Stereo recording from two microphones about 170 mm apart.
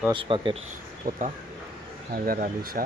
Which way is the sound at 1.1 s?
55° right (ahead or behind).